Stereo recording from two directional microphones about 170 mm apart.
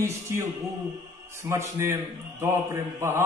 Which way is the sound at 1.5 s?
15° right (ahead or behind).